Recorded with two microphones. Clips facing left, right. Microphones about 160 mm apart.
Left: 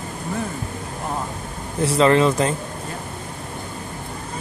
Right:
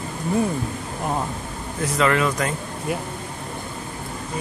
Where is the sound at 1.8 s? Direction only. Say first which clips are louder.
Left 5 dB; 30° left (ahead or behind).